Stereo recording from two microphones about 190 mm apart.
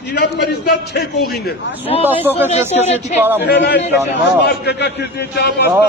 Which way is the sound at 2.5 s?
35° left (ahead or behind).